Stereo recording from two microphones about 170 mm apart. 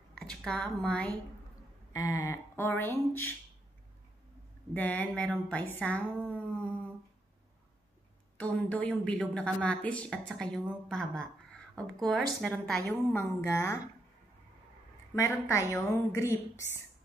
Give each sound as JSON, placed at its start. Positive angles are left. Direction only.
{"t": 0.1, "sound": "speech", "side_deg": 5}
{"t": 1.9, "sound": "speech", "side_deg": 20}
{"t": 4.7, "sound": "speech", "side_deg": 10}
{"t": 8.4, "sound": "a woman's voice", "side_deg": 10}
{"t": 12.8, "sound": "speech", "side_deg": 15}
{"t": 15.1, "sound": "speech", "side_deg": 15}